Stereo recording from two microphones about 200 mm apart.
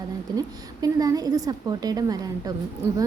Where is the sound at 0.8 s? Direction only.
20° right (ahead or behind).